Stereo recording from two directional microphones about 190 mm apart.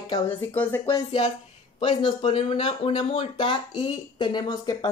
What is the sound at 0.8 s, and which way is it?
A woman's voice, 25° left (ahead or behind).